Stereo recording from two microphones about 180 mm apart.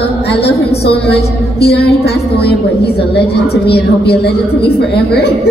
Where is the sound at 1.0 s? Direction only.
65° left (ahead or behind).